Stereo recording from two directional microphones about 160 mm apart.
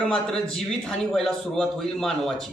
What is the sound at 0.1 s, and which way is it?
A man's voice, 5° left (ahead or behind).